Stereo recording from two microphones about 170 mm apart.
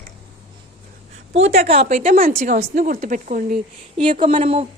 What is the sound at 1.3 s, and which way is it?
Speech, 40° right (ahead or behind).